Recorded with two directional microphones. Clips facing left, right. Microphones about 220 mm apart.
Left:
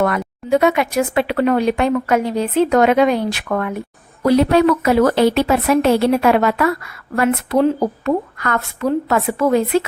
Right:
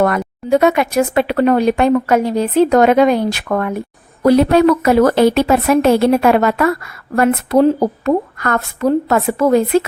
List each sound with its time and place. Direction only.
0.0 s a woman's voice: 40° right (ahead or behind)